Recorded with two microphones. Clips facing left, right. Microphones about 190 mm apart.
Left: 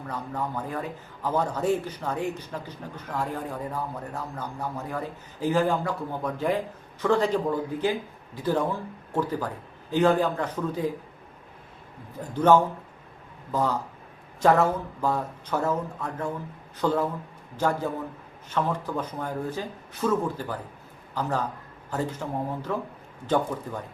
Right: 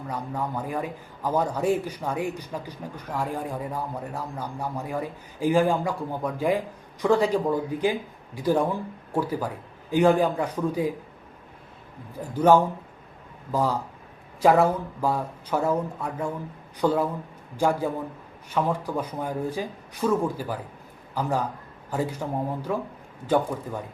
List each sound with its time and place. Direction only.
0.1 s a man's voice: 10° right (ahead or behind)
12.2 s a man's voice: 10° right (ahead or behind)